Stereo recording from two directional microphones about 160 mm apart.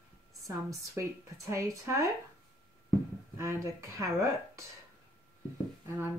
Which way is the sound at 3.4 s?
20° right (ahead or behind).